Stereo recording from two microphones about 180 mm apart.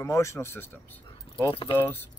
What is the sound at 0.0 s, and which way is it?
Speech, 15° left (ahead or behind).